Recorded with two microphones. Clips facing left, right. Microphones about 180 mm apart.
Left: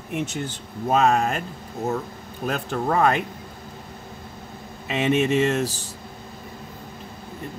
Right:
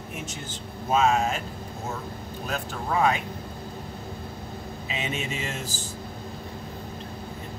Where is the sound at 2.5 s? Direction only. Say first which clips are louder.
Left 6 dB; 55° left (ahead or behind).